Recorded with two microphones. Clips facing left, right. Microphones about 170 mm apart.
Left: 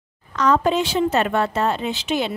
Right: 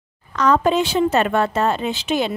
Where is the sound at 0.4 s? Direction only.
55° right (ahead or behind).